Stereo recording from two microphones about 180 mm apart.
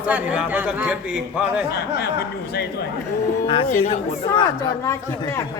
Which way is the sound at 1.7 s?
65° left (ahead or behind).